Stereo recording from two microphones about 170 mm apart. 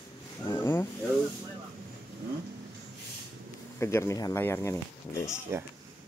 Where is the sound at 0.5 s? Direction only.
15° left (ahead or behind).